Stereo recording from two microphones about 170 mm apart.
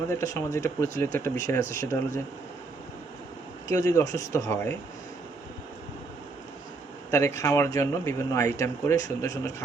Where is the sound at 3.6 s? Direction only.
20° left (ahead or behind).